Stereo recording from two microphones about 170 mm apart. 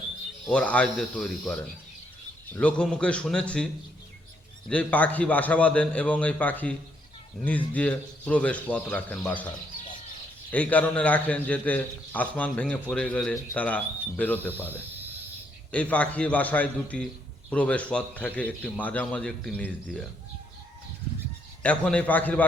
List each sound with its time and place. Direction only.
0.4 s speech: 5° left (ahead or behind)
2.6 s speech: 5° left (ahead or behind)
4.7 s a man's voice: 10° left (ahead or behind)
10.5 s a man's voice: 10° left (ahead or behind)
21.6 s a man's voice: 5° left (ahead or behind)